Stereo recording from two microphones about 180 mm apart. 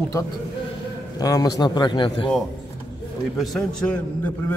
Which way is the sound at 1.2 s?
20° left (ahead or behind).